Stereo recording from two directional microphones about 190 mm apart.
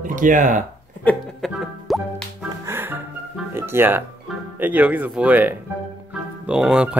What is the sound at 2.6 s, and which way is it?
Music, 10° right (ahead or behind).